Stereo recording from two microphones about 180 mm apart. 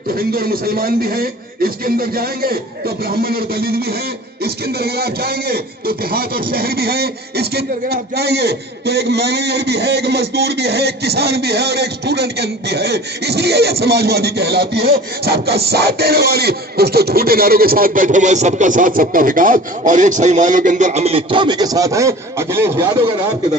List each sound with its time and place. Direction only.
0.1 s a man's voice: 55° right (ahead or behind); by 23.0 s 15° right (ahead or behind)